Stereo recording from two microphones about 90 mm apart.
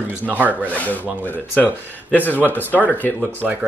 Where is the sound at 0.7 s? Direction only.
15° left (ahead or behind).